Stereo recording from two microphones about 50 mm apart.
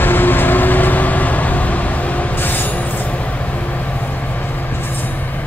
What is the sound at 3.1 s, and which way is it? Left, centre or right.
Vehicle, left.